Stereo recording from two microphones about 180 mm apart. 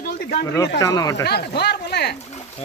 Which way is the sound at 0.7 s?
20° left (ahead or behind).